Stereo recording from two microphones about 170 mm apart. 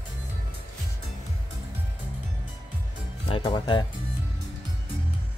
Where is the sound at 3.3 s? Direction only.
30° left (ahead or behind).